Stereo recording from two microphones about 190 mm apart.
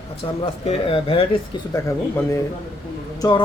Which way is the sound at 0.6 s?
30° left (ahead or behind).